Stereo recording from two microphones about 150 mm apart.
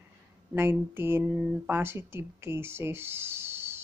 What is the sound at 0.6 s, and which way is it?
Speech, 15° right (ahead or behind).